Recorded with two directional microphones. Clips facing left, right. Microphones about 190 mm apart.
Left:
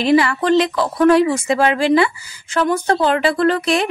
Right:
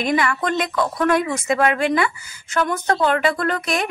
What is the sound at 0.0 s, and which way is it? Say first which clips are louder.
Speech: left 6 dB; 30° left (ahead or behind).